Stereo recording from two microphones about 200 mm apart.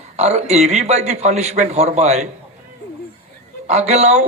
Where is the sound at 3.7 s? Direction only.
35° right (ahead or behind).